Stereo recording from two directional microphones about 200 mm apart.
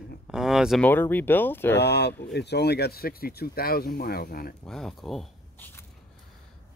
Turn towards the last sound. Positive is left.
turn(degrees=5)  # may be behind; listen again after turning